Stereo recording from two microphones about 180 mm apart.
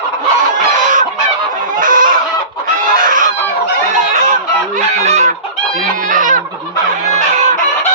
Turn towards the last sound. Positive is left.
turn(degrees=-45)  # may be behind; listen again after turning